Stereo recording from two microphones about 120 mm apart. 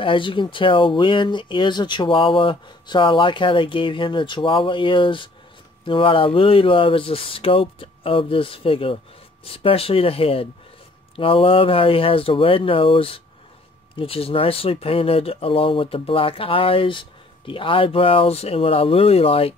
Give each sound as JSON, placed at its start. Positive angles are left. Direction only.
{"t": 0.0, "sound": "speech", "side_deg": 45}